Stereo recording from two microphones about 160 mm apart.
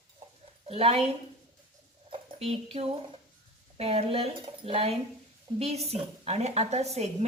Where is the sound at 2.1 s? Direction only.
35° right (ahead or behind).